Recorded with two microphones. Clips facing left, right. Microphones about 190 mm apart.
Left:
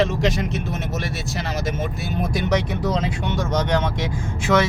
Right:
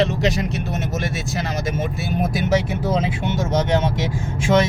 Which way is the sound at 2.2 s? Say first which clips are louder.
Right 2 dB; 5° right (ahead or behind).